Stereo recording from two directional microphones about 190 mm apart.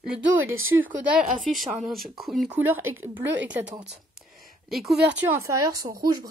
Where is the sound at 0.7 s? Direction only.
15° right (ahead or behind).